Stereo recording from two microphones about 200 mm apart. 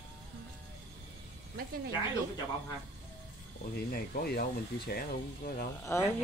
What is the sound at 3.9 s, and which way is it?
Speech, 50° left (ahead or behind).